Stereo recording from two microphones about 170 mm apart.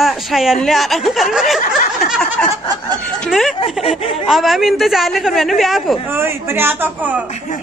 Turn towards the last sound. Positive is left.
turn(degrees=-15)  # may be behind; listen again after turning